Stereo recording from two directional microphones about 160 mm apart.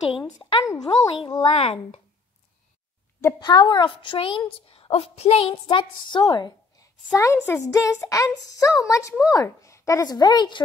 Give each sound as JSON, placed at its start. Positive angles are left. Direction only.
{"t": 0.2, "sound": "a woman's voice", "side_deg": 25}
{"t": 3.2, "sound": "a woman's voice", "side_deg": 20}
{"t": 7.2, "sound": "a woman's voice", "side_deg": 15}